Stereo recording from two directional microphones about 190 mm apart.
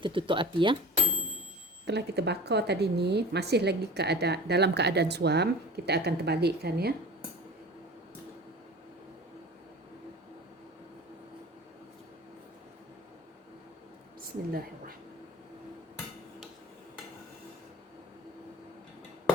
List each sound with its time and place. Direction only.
0.0 s speech: 25° right (ahead or behind)
1.9 s a woman's voice: 60° right (ahead or behind)